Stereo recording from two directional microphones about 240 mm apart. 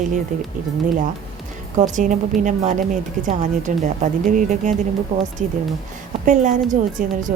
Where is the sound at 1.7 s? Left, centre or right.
Right.